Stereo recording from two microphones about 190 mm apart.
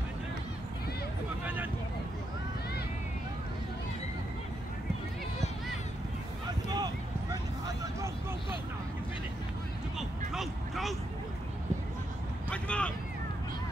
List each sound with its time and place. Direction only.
6.7 s a sound: 20° right (ahead or behind)
9.9 s vehicle: centre (ahead or behind)
12.4 s vehicle: 5° left (ahead or behind)